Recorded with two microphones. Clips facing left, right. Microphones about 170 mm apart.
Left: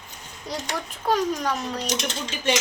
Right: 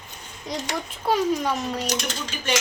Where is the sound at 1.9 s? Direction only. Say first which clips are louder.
Even; 25° left (ahead or behind).